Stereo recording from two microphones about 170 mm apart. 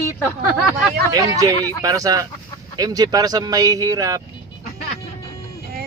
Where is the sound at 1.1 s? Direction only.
20° right (ahead or behind).